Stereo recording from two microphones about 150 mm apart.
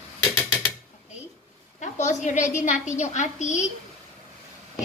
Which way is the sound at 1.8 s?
55° left (ahead or behind).